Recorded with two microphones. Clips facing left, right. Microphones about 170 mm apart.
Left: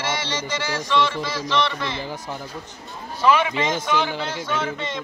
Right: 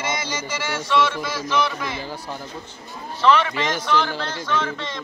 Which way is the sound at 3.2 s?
10° left (ahead or behind).